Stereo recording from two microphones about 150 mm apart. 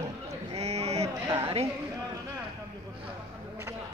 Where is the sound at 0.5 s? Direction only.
40° right (ahead or behind).